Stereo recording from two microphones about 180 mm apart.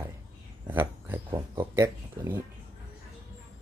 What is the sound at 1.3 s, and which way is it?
Speech, 25° right (ahead or behind).